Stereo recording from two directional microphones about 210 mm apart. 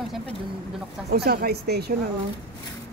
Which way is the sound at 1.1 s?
50° right (ahead or behind).